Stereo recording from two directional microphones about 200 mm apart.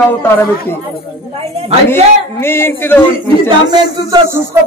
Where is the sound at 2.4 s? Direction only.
10° left (ahead or behind).